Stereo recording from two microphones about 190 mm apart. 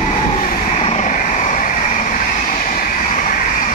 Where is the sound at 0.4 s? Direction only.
40° left (ahead or behind).